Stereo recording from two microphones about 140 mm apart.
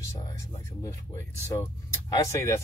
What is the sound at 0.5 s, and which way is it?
Speech, 20° left (ahead or behind).